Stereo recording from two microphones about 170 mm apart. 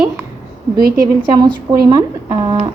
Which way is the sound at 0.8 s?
60° right (ahead or behind).